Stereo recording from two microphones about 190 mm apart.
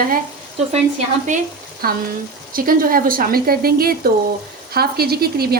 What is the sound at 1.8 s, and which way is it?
A woman's voice, 50° right (ahead or behind).